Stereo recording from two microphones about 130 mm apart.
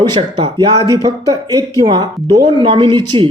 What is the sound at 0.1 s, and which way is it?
Speech, 40° right (ahead or behind).